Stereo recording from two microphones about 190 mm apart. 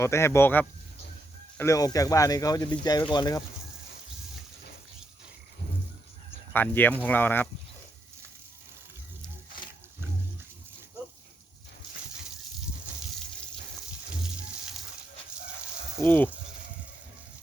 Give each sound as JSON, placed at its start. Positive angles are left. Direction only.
{"t": 0.0, "sound": "speech", "side_deg": 15}
{"t": 6.5, "sound": "speech", "side_deg": 10}
{"t": 16.0, "sound": "speech", "side_deg": 10}